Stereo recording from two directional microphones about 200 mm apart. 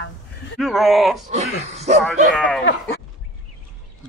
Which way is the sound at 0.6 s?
Centre (ahead or behind).